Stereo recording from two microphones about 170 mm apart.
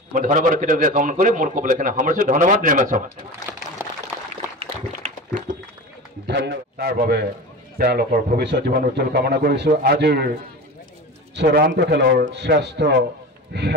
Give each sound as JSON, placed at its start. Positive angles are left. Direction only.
{"t": 0.1, "sound": "a man's voice", "side_deg": -50}
{"t": 5.0, "sound": "a sound", "side_deg": -35}
{"t": 6.2, "sound": "a man's voice", "side_deg": -85}
{"t": 8.5, "sound": "a man's voice", "side_deg": -75}
{"t": 11.3, "sound": "a man's voice", "side_deg": -65}